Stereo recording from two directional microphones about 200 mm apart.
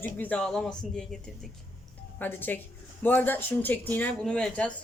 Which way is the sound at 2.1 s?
10° left (ahead or behind).